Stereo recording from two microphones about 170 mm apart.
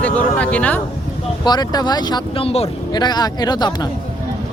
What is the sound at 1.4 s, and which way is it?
A man's voice, 25° left (ahead or behind).